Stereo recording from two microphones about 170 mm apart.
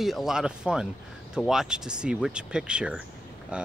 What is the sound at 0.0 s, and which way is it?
Speech, centre (ahead or behind).